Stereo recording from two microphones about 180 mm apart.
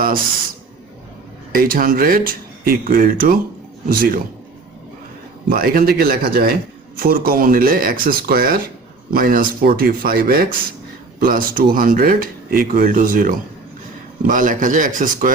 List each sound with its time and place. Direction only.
1.5 s a man's voice: 50° right (ahead or behind)
5.5 s a man's voice: 55° right (ahead or behind)